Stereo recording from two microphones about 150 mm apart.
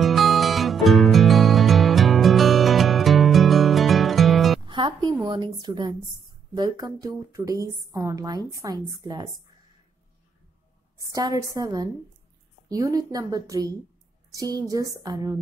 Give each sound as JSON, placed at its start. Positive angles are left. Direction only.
{"t": 0.0, "sound": "music", "side_deg": 0}
{"t": 4.6, "sound": "a sound", "side_deg": -30}
{"t": 6.5, "sound": "a woman's voice", "side_deg": -25}
{"t": 11.0, "sound": "a woman's voice", "side_deg": -25}